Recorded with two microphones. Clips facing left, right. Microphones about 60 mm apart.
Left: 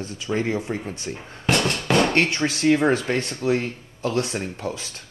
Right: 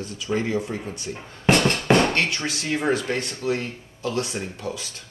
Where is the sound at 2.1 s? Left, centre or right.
Left.